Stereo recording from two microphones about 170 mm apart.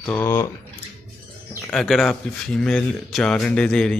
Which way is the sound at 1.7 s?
Centre (ahead or behind).